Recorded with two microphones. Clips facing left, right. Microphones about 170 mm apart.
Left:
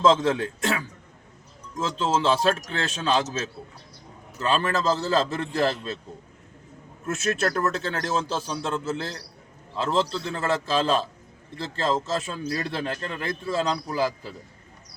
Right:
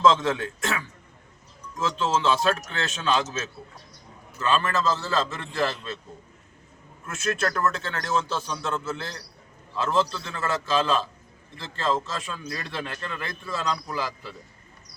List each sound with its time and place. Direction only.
0.0 s a man's voice: 30° left (ahead or behind)
4.4 s a man's voice: 35° left (ahead or behind)
7.0 s a man's voice: 40° left (ahead or behind)